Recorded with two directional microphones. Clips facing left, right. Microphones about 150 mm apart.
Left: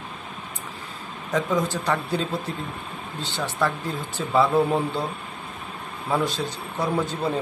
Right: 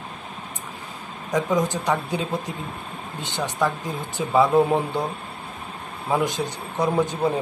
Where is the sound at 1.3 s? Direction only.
15° right (ahead or behind).